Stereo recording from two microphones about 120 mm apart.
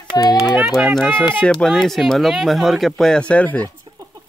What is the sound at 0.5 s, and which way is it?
Speech, centre (ahead or behind).